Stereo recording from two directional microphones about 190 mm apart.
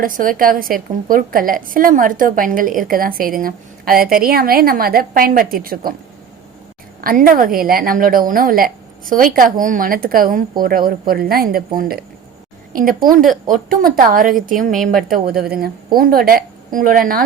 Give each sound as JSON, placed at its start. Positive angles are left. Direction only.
{"t": 0.0, "sound": "a woman's voice", "side_deg": -45}
{"t": 7.0, "sound": "a woman's voice", "side_deg": -50}